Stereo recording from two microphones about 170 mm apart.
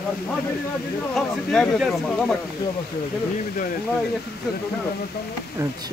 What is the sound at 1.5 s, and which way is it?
Speech, centre (ahead or behind).